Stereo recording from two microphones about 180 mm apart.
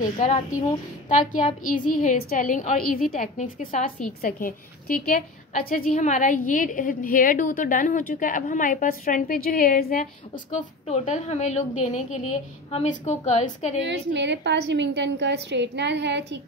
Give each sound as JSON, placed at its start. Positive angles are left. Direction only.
{"t": 0.0, "sound": "a woman's voice", "side_deg": 45}
{"t": 13.8, "sound": "a woman's voice", "side_deg": -75}